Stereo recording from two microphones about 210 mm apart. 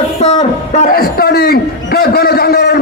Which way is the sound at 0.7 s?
40° left (ahead or behind).